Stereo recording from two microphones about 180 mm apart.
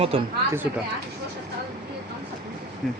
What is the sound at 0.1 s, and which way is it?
Speech, 30° right (ahead or behind).